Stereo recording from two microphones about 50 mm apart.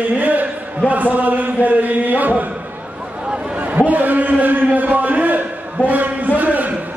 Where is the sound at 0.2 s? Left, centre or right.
Right.